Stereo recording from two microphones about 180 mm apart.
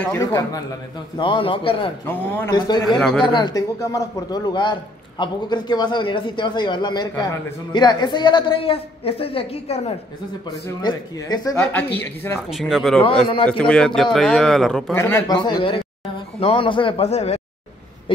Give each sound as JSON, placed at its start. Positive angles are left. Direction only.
{"t": 0.2, "sound": "a man's voice", "side_deg": 20}
{"t": 2.0, "sound": "speech", "side_deg": 15}
{"t": 3.3, "sound": "a man's voice", "side_deg": 20}
{"t": 10.8, "sound": "a man's voice", "side_deg": 25}
{"t": 11.6, "sound": "speech", "side_deg": 10}
{"t": 12.4, "sound": "speech", "side_deg": 0}
{"t": 15.0, "sound": "a man's voice", "side_deg": 15}